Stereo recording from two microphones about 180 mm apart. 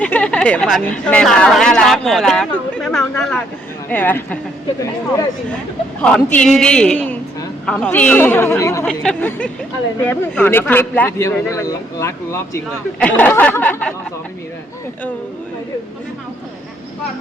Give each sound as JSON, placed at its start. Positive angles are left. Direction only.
{"t": 0.0, "sound": "speech", "side_deg": 5}
{"t": 6.0, "sound": "a woman's voice", "side_deg": 5}